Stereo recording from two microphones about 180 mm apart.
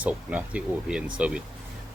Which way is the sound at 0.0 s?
10° right (ahead or behind).